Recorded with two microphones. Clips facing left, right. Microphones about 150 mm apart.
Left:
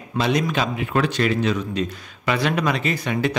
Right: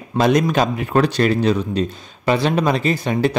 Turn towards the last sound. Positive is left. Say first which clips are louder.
# right 4 dB
turn(degrees=-35)  # may be behind; listen again after turning